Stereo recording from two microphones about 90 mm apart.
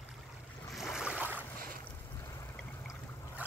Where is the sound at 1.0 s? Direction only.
15° right (ahead or behind).